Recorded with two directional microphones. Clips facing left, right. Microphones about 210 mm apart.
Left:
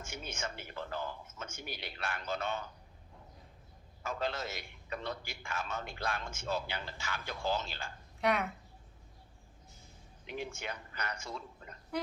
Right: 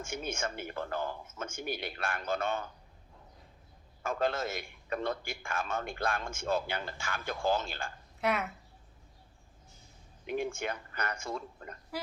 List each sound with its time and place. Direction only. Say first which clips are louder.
0.0 s a man's voice: right 6 dB; 50° right (ahead or behind)
4.0 s a man's voice: right 5 dB; 50° right (ahead or behind)
8.2 s speech: even; centre (ahead or behind)
10.2 s a man's voice: right 7 dB; 50° right (ahead or behind)